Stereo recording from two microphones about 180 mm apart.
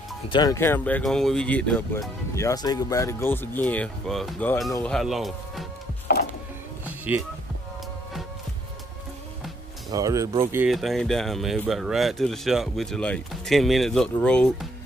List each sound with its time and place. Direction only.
0.3 s speech: 20° left (ahead or behind); by 5.7 s centre (ahead or behind)
7.1 s speech: 10° right (ahead or behind)
9.8 s speech: 20° right (ahead or behind)
10.7 s speech: centre (ahead or behind)